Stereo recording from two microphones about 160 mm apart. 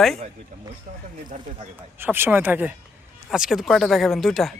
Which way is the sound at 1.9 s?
15° right (ahead or behind).